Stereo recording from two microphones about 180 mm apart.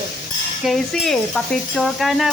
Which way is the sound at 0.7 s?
Centre (ahead or behind).